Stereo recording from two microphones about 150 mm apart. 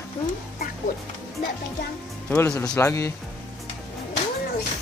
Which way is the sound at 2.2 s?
15° left (ahead or behind).